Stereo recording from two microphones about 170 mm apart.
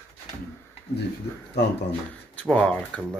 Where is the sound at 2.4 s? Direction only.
5° left (ahead or behind).